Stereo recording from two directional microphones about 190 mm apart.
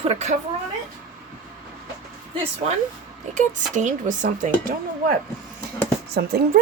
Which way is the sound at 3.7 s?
40° right (ahead or behind).